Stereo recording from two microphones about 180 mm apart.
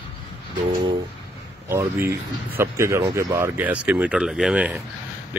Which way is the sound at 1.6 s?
10° right (ahead or behind).